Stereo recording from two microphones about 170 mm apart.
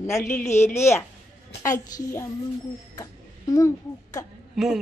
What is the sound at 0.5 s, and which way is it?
Speech, 40° left (ahead or behind).